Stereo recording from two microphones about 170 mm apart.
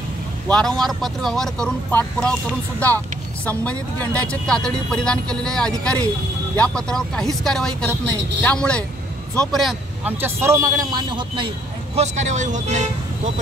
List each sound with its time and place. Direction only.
0.5 s speech: 5° left (ahead or behind)
3.4 s speech: 10° left (ahead or behind)
10.2 s a man's voice: 15° right (ahead or behind); by 12.8 s 45° right (ahead or behind)